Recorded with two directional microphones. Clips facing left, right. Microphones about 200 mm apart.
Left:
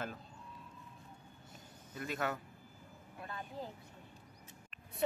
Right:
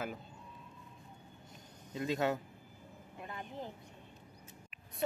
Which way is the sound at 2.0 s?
20° right (ahead or behind).